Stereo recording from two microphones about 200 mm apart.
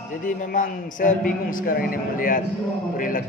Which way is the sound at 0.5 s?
40° left (ahead or behind).